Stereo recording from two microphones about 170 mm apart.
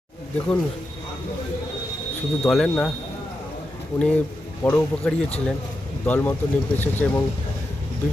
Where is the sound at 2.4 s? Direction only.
5° left (ahead or behind).